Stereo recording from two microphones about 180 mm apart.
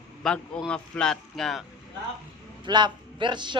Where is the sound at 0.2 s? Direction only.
5° left (ahead or behind).